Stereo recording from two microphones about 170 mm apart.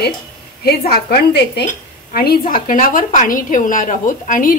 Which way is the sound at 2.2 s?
55° left (ahead or behind).